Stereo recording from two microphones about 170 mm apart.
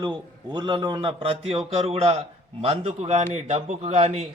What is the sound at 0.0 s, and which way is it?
A man's voice, 25° right (ahead or behind).